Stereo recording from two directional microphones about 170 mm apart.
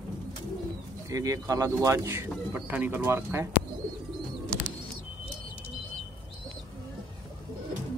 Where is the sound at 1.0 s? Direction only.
20° right (ahead or behind).